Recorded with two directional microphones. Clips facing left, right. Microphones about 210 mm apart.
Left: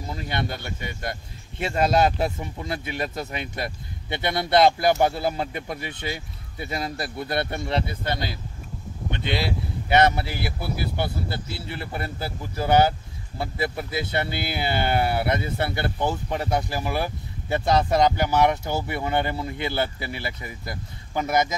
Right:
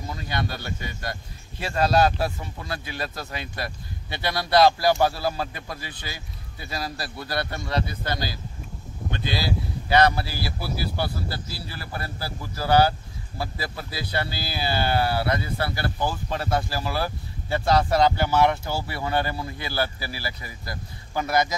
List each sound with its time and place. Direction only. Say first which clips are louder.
0.1 s speech: left 1 dB; 25° left (ahead or behind)